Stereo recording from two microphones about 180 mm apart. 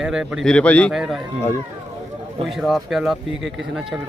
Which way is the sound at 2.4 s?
Centre (ahead or behind).